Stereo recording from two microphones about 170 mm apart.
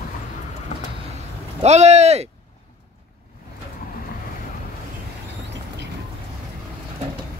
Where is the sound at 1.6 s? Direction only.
40° right (ahead or behind).